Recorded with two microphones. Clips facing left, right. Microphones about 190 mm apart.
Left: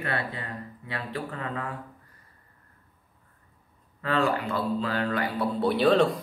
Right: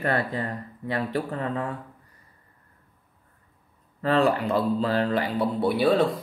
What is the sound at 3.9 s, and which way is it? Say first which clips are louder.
Speech: right 4 dB; 35° right (ahead or behind).